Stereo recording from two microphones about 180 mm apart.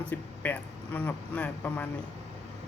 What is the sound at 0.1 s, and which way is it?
Speech, 10° left (ahead or behind).